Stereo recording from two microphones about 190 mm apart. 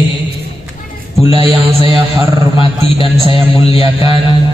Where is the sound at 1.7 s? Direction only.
20° right (ahead or behind).